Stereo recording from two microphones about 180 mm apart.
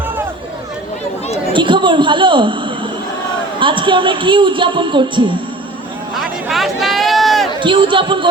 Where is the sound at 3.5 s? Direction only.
30° right (ahead or behind).